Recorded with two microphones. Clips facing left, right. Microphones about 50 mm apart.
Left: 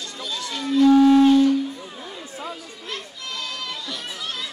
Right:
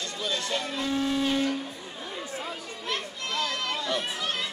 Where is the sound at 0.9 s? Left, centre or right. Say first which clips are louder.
Left 15 dB; left.